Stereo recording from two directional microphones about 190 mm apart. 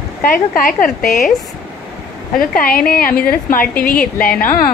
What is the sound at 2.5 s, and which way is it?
A woman's voice, 50° left (ahead or behind).